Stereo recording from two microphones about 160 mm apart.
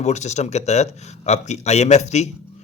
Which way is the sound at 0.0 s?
45° left (ahead or behind).